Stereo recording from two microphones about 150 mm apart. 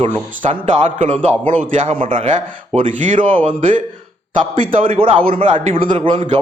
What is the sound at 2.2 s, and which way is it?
Speech, 55° right (ahead or behind).